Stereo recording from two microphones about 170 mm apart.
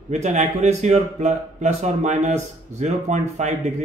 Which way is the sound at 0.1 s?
45° right (ahead or behind).